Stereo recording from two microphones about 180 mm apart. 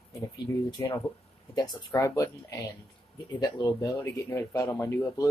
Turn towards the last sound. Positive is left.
turn(degrees=15)  # may be behind; listen again after turning